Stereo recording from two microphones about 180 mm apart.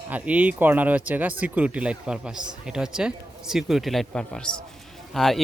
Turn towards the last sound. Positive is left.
turn(degrees=0)  # may be behind; listen again after turning